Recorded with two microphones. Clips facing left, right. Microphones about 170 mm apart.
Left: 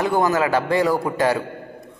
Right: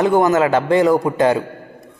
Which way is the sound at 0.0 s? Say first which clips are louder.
Right 5 dB; 20° right (ahead or behind).